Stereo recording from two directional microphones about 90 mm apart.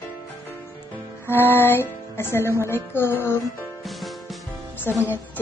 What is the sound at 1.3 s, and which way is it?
Speech, 25° left (ahead or behind).